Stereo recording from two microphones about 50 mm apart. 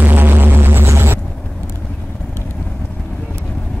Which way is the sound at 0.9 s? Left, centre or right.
Right.